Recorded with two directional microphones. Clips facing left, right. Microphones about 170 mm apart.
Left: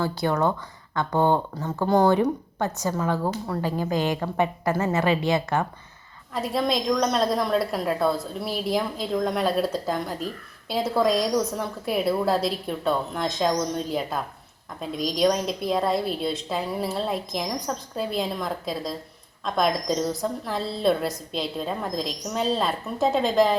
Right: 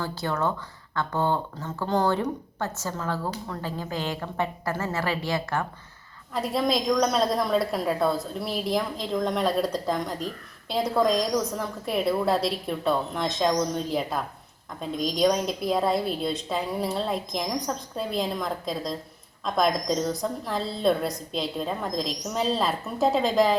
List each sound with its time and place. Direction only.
0.0 s a woman's voice: 15° left (ahead or behind)
6.3 s a woman's voice: centre (ahead or behind)